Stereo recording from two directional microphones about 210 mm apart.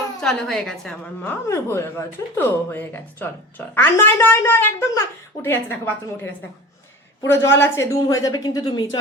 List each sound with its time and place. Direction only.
0.2 s a woman's voice: 5° left (ahead or behind)
1.5 s a woman's voice: 10° left (ahead or behind)
7.3 s a woman's voice: 60° left (ahead or behind)
7.6 s a woman's voice: 15° left (ahead or behind)